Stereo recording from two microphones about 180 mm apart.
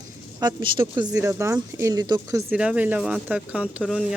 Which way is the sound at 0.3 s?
25° right (ahead or behind).